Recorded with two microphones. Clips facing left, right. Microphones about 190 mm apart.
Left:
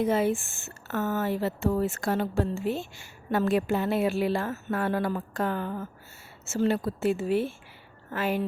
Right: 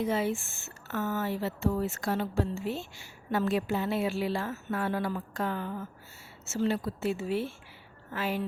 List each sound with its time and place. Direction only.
0.0 s a woman's voice: 50° left (ahead or behind)